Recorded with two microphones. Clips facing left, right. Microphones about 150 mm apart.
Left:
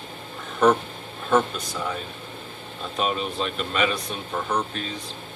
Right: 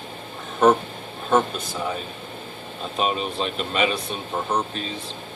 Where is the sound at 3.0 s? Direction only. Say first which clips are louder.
Right 1 dB; 25° right (ahead or behind).